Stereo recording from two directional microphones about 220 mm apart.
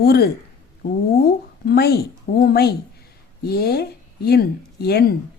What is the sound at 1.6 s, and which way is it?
A woman's voice, 45° left (ahead or behind).